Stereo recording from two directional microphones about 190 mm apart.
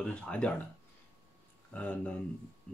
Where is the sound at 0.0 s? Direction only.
5° left (ahead or behind).